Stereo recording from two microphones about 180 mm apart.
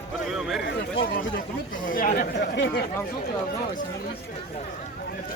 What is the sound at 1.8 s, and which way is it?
Speech, 50° left (ahead or behind).